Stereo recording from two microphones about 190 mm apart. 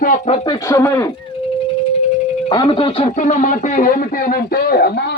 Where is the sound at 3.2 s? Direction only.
40° left (ahead or behind); by 5.1 s 55° left (ahead or behind).